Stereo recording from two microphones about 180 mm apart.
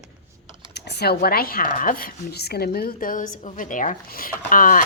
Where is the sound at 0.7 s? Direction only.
65° left (ahead or behind).